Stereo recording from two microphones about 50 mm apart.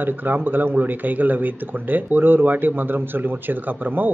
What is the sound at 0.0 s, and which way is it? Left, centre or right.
Speech, right.